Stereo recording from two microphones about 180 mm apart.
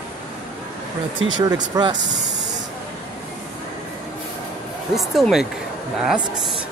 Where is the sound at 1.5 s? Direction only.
25° right (ahead or behind).